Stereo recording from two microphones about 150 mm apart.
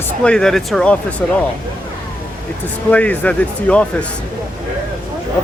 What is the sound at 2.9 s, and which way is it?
Speech, 10° left (ahead or behind).